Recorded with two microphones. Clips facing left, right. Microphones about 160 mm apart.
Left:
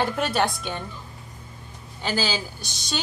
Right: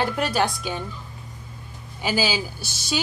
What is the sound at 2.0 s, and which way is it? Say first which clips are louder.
Speech: right 2 dB; 10° right (ahead or behind).